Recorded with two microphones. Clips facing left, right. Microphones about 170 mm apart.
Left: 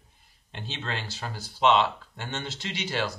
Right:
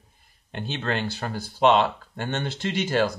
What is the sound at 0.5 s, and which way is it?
Speech, 55° right (ahead or behind).